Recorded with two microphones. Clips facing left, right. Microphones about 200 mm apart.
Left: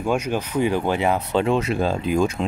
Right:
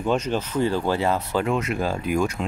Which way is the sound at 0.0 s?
10° left (ahead or behind).